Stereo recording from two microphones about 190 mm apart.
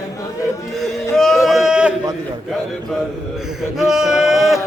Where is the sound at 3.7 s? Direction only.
Centre (ahead or behind).